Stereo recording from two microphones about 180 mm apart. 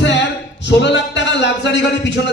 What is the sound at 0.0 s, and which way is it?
A man's voice, 80° left.